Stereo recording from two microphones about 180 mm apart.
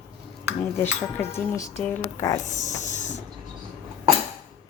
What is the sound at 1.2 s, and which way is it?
Speech, 15° left (ahead or behind).